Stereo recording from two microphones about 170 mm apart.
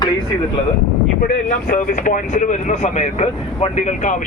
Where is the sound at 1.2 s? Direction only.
55° left (ahead or behind).